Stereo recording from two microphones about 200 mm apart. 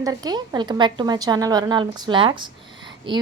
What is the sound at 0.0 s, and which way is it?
A woman's voice, 20° right (ahead or behind).